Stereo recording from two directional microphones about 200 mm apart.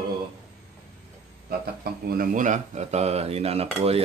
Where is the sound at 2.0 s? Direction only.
40° right (ahead or behind).